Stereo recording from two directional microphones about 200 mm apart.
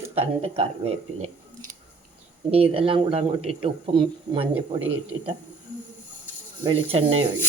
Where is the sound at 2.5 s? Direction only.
30° right (ahead or behind).